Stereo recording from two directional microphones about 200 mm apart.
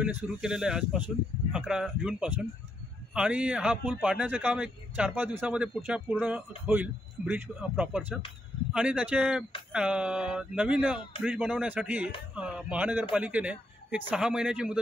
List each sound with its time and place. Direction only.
0.0 s a man's voice: 5° right (ahead or behind)